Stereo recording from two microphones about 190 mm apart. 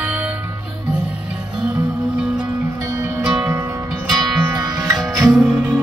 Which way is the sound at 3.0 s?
10° right (ahead or behind).